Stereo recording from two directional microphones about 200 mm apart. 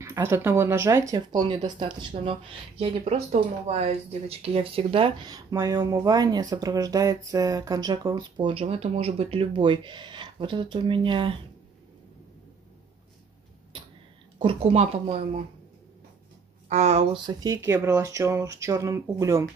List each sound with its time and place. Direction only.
0.0 s speech: 15° right (ahead or behind)
14.4 s speech: 25° right (ahead or behind)
16.6 s speech: 35° right (ahead or behind); by 19.4 s 15° right (ahead or behind)